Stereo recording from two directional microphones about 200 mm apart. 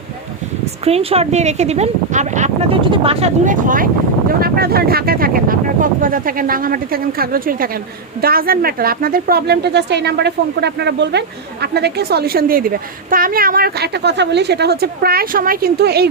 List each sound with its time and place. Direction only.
0.6 s a woman's voice: 30° right (ahead or behind); by 16.0 s 50° right (ahead or behind)